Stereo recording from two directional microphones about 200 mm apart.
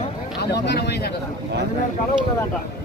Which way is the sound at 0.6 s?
55° left (ahead or behind).